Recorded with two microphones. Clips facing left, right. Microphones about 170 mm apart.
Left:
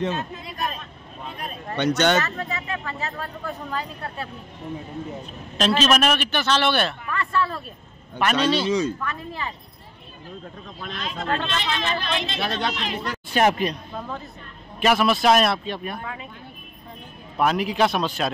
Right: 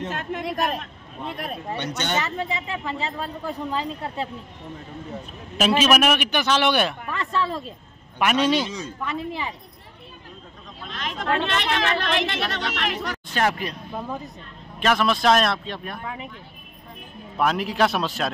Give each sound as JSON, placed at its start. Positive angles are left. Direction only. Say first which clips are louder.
{"t": 0.1, "sound": "speech", "louder": "right 3 dB", "side_deg": -90}
{"t": 1.8, "sound": "speech", "louder": "left 10 dB", "side_deg": 75}
{"t": 2.2, "sound": "speech", "louder": "right 2 dB", "side_deg": -15}
{"t": 5.6, "sound": "speech", "louder": "right 1 dB", "side_deg": -10}
{"t": 8.6, "sound": "speech", "louder": "left 11 dB", "side_deg": 75}
{"t": 9.0, "sound": "speech", "louder": "right 2 dB", "side_deg": -15}
{"t": 11.0, "sound": "speech", "louder": "right 2 dB", "side_deg": -75}
{"t": 13.3, "sound": "speech", "louder": "left 5 dB", "side_deg": 20}
{"t": 13.9, "sound": "speech", "louder": "right 2 dB", "side_deg": -15}
{"t": 14.8, "sound": "a man's voice", "louder": "left 2 dB", "side_deg": 5}
{"t": 17.4, "sound": "a man's voice", "louder": "left 1 dB", "side_deg": 0}